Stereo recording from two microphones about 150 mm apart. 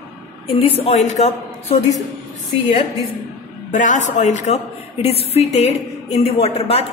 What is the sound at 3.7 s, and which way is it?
A woman's voice, 55° left (ahead or behind).